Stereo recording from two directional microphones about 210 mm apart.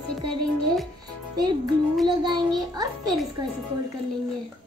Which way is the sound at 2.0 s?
20° right (ahead or behind).